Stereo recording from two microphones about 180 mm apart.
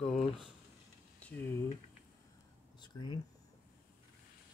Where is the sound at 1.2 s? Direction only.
10° left (ahead or behind).